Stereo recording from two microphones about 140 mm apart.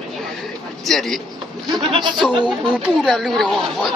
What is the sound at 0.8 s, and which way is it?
Speech, centre (ahead or behind).